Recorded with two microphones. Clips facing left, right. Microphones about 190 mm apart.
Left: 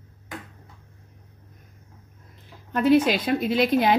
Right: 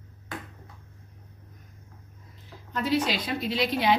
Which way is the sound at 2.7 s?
55° left (ahead or behind).